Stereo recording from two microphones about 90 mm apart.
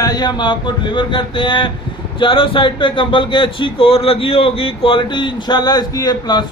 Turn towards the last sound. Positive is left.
turn(degrees=50)  # may be behind; listen again after turning